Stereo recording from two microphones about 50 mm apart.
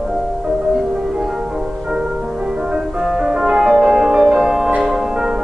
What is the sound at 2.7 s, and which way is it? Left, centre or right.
Music, centre.